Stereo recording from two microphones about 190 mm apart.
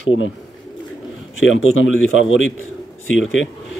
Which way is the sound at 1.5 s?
90° left.